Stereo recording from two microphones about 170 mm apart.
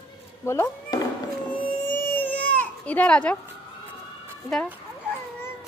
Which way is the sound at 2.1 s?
10° left (ahead or behind).